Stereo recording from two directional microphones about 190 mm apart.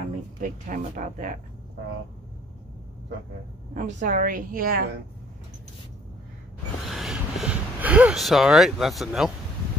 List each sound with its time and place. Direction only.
0.4 s a woman's voice: 45° right (ahead or behind)
3.7 s a woman's voice: 45° right (ahead or behind)
6.9 s speech: centre (ahead or behind)